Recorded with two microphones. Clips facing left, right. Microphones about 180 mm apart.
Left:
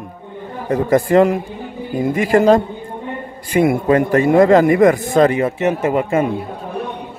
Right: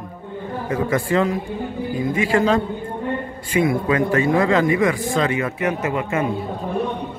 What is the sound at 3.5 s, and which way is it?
A man's voice, 45° left (ahead or behind).